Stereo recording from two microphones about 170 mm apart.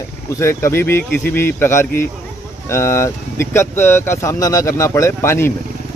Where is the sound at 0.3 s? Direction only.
15° left (ahead or behind).